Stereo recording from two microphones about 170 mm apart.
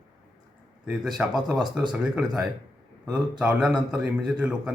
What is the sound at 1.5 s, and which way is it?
Speech, 25° right (ahead or behind).